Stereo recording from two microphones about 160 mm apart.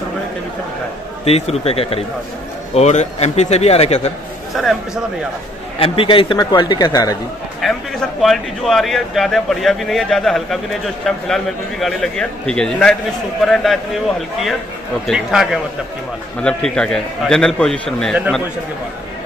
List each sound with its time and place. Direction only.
1.2 s a man's voice: 40° left (ahead or behind)
4.6 s speech: centre (ahead or behind)
5.8 s a man's voice: 35° left (ahead or behind)
7.6 s speech: centre (ahead or behind)
15.0 s speech: centre (ahead or behind)